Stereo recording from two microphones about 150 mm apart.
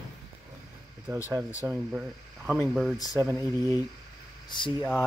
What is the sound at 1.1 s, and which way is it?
Speech, 20° right (ahead or behind).